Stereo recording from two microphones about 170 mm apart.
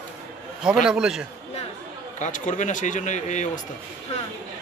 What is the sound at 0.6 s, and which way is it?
Speech, 5° right (ahead or behind).